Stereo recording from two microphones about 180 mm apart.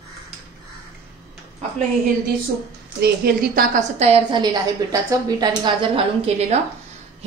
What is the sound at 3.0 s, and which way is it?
Speech, 55° right (ahead or behind).